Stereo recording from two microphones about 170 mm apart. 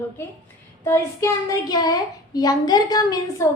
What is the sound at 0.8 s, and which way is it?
A woman's voice, 15° left (ahead or behind).